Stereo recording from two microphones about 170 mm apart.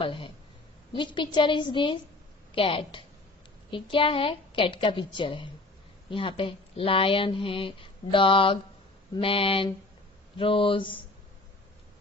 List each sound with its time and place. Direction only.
0.0 s a woman's voice: 30° left (ahead or behind)